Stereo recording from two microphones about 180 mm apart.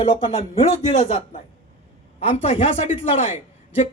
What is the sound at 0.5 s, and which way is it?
A man's voice, 30° left (ahead or behind).